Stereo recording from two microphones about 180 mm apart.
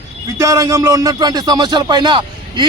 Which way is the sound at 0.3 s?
20° right (ahead or behind).